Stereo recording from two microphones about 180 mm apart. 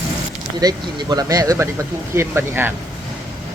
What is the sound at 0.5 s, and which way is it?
Speech, 20° right (ahead or behind).